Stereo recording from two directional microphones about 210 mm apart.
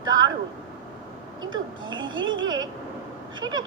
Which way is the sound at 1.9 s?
20° right (ahead or behind).